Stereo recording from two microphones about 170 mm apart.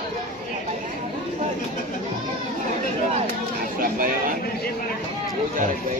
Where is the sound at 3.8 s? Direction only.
55° right (ahead or behind).